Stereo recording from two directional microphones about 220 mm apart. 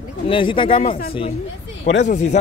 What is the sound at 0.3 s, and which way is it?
Speech, 25° left (ahead or behind).